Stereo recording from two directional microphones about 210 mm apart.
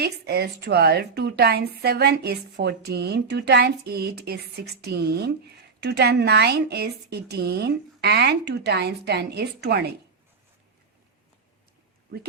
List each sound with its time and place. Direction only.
0.0 s a woman's voice: 50° right (ahead or behind)